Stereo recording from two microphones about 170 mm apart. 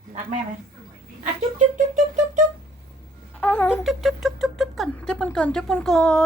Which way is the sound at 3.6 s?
5° right (ahead or behind).